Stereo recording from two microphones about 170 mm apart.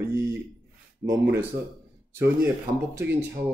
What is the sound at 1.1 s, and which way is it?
Speech, 15° right (ahead or behind).